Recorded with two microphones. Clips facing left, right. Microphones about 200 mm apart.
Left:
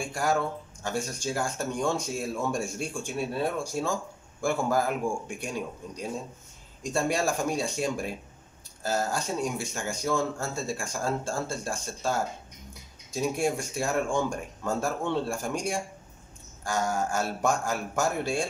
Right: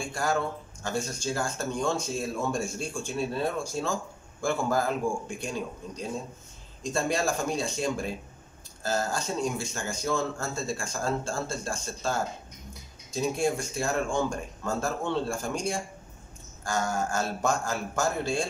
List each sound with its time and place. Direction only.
0.0 s speech: 15° left (ahead or behind)
6.8 s speech: 10° left (ahead or behind)